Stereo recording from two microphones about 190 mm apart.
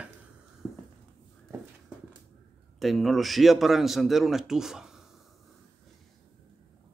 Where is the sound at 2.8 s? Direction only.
Centre (ahead or behind).